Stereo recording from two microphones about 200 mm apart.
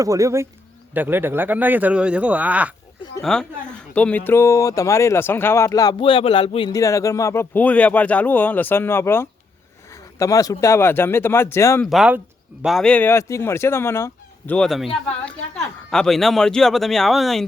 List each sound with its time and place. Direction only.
0.0 s speech: 15° right (ahead or behind); by 11.9 s 15° left (ahead or behind)
11.9 s speech: 5° right (ahead or behind)
15.9 s speech: centre (ahead or behind)